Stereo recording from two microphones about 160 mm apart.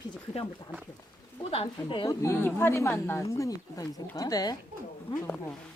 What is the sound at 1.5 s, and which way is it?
Speech, 35° left (ahead or behind).